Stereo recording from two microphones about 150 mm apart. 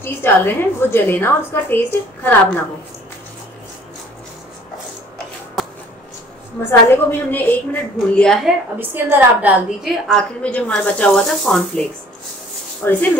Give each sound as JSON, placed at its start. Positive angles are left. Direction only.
{"t": 0.0, "sound": "a woman's voice", "side_deg": 15}
{"t": 6.6, "sound": "a woman's voice", "side_deg": 15}
{"t": 8.7, "sound": "a woman's voice", "side_deg": -15}
{"t": 12.8, "sound": "a woman's voice", "side_deg": 10}